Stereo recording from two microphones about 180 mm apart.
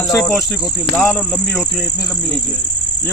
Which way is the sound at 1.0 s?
5° left (ahead or behind).